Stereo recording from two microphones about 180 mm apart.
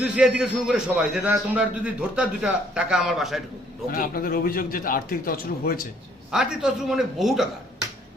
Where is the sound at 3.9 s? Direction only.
55° left (ahead or behind).